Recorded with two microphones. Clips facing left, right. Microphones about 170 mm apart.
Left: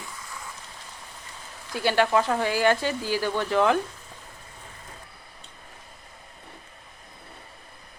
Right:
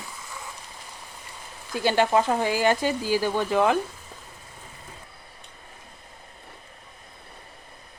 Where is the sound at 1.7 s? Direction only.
20° right (ahead or behind).